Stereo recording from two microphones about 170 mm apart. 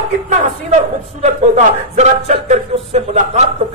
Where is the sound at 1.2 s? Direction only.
40° right (ahead or behind).